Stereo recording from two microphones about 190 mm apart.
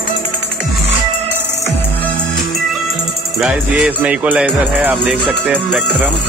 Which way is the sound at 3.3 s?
5° right (ahead or behind).